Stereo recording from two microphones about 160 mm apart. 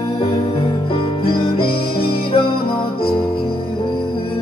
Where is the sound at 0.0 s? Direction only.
35° left (ahead or behind).